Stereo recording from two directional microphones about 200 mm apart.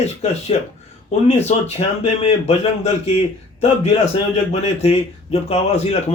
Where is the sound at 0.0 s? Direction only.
30° left (ahead or behind).